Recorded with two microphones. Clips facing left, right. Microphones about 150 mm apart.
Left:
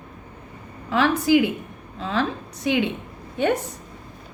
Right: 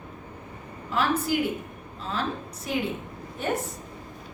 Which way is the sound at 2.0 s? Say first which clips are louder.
Left 6 dB; 90° left.